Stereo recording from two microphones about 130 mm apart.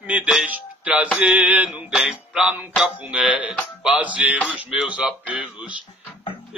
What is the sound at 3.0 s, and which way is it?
A man's voice, 5° right (ahead or behind).